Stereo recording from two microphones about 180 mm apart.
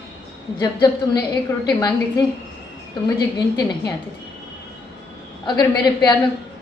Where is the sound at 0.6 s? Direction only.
20° left (ahead or behind).